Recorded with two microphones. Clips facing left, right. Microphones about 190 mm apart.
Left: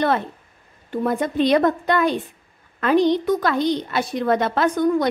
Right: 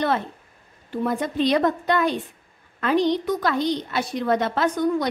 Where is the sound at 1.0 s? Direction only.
55° left (ahead or behind).